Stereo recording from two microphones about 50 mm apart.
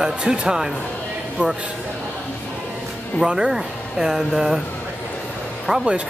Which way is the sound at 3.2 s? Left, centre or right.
Centre.